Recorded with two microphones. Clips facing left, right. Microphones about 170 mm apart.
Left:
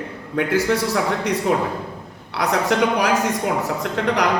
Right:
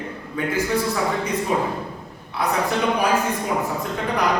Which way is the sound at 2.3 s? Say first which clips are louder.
Left 2 dB; 80° left.